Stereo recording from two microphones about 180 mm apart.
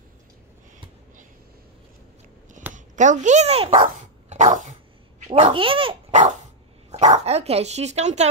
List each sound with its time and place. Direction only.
2.7 s speech: 45° right (ahead or behind)
3.7 s dog: 45° right (ahead or behind)
5.3 s speech: 35° right (ahead or behind)